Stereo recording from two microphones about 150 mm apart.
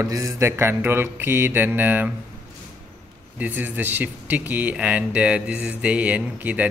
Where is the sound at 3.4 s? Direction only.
10° right (ahead or behind).